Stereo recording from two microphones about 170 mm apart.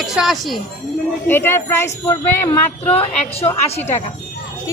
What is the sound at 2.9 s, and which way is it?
Speech, 35° left (ahead or behind).